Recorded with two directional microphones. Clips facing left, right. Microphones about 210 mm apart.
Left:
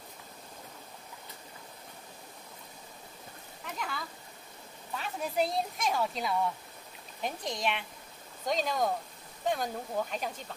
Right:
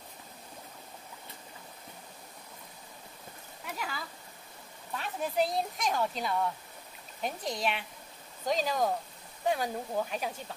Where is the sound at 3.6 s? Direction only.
5° right (ahead or behind).